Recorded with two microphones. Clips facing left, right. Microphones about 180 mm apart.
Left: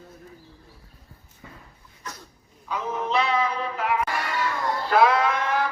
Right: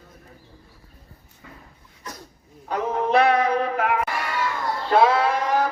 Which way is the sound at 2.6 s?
60° right (ahead or behind).